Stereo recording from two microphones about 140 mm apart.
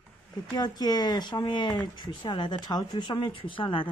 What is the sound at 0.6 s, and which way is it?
Speech, 30° left (ahead or behind).